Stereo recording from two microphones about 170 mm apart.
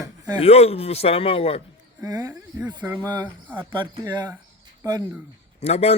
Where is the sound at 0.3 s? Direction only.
40° left (ahead or behind).